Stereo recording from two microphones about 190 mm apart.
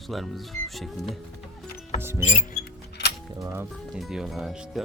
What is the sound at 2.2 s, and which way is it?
Mechanisms, 40° left (ahead or behind).